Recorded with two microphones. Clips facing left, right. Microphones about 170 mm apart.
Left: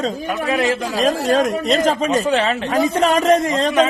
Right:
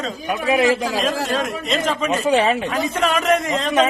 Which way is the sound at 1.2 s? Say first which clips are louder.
Left 6 dB; 40° left (ahead or behind).